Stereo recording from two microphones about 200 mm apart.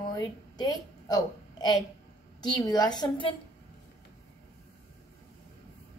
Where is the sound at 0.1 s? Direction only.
20° left (ahead or behind).